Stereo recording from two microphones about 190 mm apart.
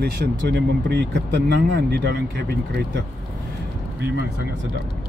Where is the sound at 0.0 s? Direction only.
60° right (ahead or behind).